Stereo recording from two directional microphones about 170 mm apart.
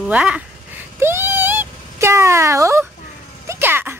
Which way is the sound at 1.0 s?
15° right (ahead or behind).